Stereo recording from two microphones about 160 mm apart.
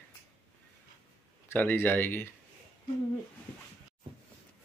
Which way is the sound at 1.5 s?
15° left (ahead or behind).